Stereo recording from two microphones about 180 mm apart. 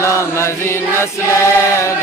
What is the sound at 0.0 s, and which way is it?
Chant, 15° left (ahead or behind).